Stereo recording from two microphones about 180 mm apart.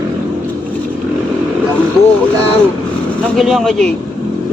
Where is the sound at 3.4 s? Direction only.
Centre (ahead or behind).